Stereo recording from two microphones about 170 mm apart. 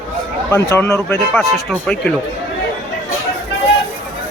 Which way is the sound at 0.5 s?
15° left (ahead or behind).